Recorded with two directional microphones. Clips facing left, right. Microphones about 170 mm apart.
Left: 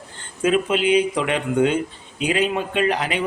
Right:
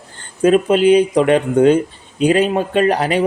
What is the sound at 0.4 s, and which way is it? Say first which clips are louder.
Speech: right 7 dB; 40° right (ahead or behind).